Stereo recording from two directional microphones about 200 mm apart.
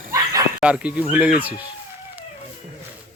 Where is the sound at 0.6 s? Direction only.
5° right (ahead or behind).